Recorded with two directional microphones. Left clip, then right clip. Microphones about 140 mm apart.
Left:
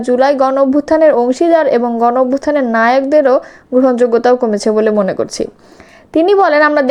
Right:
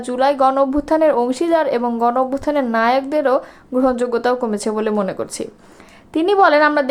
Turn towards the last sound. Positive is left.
turn(degrees=30)  # may be behind; listen again after turning